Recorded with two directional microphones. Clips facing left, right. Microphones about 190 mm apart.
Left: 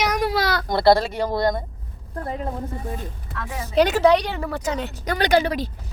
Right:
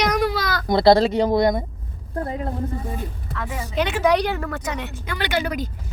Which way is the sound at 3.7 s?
40° left (ahead or behind).